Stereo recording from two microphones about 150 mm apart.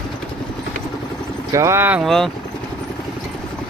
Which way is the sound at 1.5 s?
20° right (ahead or behind).